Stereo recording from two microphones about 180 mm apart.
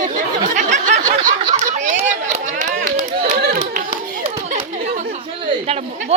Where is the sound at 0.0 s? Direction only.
45° right (ahead or behind).